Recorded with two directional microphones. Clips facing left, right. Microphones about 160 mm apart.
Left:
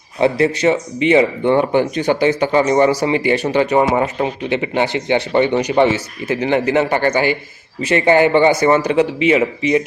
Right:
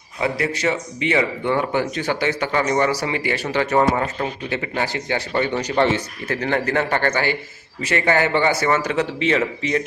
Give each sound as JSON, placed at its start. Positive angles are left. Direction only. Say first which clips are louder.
{"t": 0.2, "sound": "speech", "louder": "left 8 dB", "side_deg": 25}